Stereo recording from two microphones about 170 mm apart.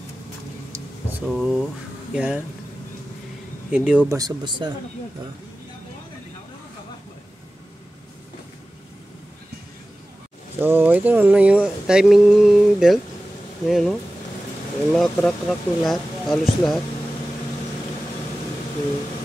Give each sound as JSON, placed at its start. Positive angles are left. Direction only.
{"t": 0.7, "sound": "vehicle", "side_deg": -20}
{"t": 1.2, "sound": "speech", "side_deg": -5}
{"t": 3.7, "sound": "speech", "side_deg": -5}
{"t": 4.1, "sound": "speech", "side_deg": -25}
{"t": 10.6, "sound": "speech", "side_deg": -10}
{"t": 15.0, "sound": "speech", "side_deg": 0}